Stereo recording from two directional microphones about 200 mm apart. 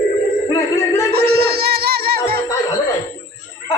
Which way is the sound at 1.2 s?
50° right (ahead or behind).